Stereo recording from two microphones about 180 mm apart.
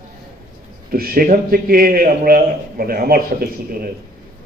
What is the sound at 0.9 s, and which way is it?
A man's voice, 55° right (ahead or behind).